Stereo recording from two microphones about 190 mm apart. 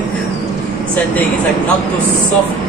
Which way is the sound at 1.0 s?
5° left (ahead or behind).